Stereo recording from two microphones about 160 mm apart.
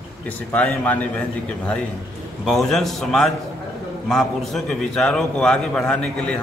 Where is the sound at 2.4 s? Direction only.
Centre (ahead or behind).